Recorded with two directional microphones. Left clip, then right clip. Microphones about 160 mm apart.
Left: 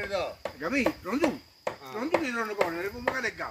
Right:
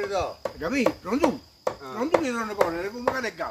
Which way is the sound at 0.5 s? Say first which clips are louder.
Right 3 dB; 5° left (ahead or behind).